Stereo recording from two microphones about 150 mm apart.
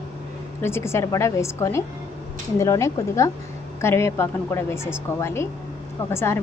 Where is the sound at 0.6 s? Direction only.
15° left (ahead or behind).